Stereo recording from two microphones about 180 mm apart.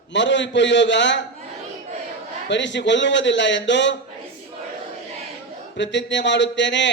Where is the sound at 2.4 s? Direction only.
80° left.